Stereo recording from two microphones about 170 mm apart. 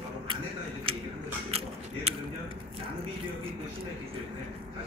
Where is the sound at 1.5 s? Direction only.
35° right (ahead or behind).